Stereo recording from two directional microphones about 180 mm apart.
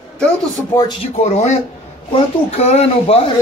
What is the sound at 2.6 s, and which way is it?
Speech, 35° left (ahead or behind).